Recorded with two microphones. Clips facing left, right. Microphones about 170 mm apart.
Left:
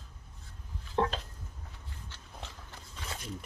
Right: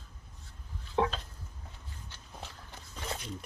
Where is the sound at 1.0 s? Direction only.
5° right (ahead or behind).